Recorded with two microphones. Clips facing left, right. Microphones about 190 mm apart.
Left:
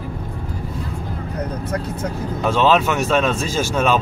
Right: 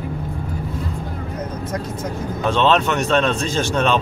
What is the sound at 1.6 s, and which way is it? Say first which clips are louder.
Speech: left 1 dB; 65° left (ahead or behind).